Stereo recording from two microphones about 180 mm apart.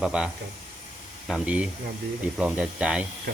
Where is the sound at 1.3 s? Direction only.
5° right (ahead or behind).